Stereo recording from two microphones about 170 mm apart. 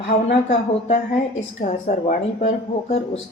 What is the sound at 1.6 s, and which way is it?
Speech, 40° left (ahead or behind).